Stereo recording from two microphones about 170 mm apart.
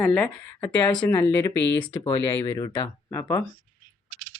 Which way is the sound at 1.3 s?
15° left (ahead or behind).